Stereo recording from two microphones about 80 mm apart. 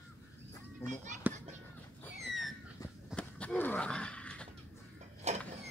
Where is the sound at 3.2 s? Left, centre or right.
Centre.